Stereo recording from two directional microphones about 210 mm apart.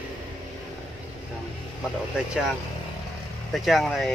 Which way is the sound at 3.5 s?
Centre (ahead or behind).